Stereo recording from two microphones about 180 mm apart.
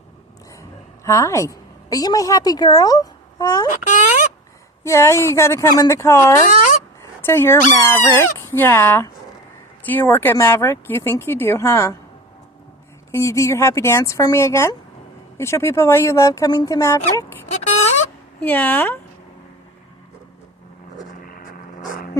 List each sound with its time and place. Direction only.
1.0 s a woman's voice: 15° left (ahead or behind)
3.7 s speech: 45° left (ahead or behind)
4.8 s speech: 15° left (ahead or behind)
6.5 s a sound: 45° left (ahead or behind)
7.3 s speech: 15° left (ahead or behind)
13.1 s speech: 15° left (ahead or behind)
17.5 s a sound: 40° left (ahead or behind)
18.3 s speech: 10° left (ahead or behind)